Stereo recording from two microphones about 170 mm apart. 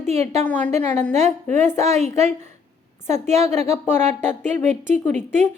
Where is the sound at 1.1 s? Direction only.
40° right (ahead or behind).